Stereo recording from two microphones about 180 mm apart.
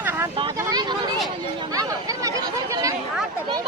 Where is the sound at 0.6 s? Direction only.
20° right (ahead or behind).